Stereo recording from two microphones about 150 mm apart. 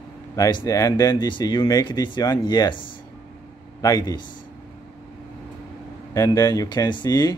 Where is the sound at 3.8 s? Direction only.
25° left (ahead or behind).